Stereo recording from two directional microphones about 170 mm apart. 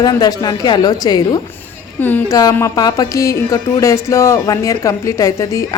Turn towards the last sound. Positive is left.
turn(degrees=20)  # may be behind; listen again after turning